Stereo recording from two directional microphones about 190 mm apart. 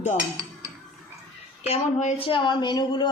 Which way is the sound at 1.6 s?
35° left (ahead or behind).